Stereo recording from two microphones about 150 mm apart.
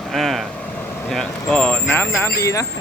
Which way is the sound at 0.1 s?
Centre (ahead or behind).